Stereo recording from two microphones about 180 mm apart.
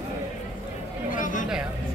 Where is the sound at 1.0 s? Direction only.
50° left (ahead or behind).